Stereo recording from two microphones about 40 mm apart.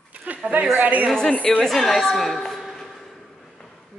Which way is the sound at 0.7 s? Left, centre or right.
Right.